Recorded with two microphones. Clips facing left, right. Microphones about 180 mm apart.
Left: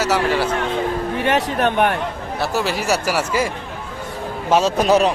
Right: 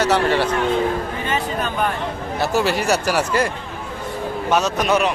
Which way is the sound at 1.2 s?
75° left (ahead or behind).